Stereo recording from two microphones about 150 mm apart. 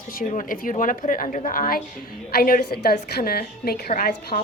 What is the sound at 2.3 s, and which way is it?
A woman's voice, 80° left.